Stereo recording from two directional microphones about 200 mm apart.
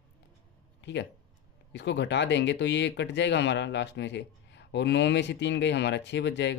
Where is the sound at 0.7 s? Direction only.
60° left (ahead or behind).